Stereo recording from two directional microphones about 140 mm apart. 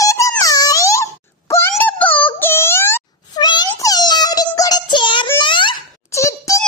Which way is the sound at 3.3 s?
30° left (ahead or behind).